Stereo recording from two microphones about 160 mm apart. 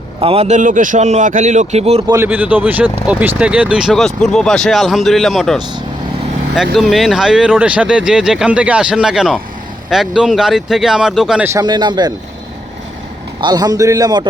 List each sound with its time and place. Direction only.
0.2 s a man's voice: 40° right (ahead or behind)
2.0 s speech: 15° right (ahead or behind); by 5.5 s centre (ahead or behind)
6.9 s speech: centre (ahead or behind)
11.4 s a man's voice: 20° right (ahead or behind)
13.4 s a man's voice: 25° right (ahead or behind)